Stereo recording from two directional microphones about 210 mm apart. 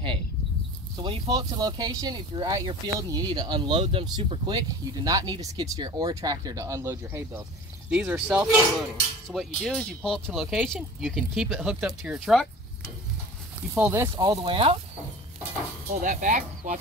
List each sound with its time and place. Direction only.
0.9 s speech: 20° right (ahead or behind); by 12.4 s centre (ahead or behind)
13.6 s speech: 10° right (ahead or behind); by 14.8 s 25° right (ahead or behind)
15.9 s speech: 35° right (ahead or behind)